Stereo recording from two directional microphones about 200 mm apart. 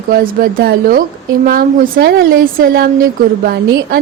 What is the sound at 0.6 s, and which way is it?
A woman's voice, 50° right (ahead or behind).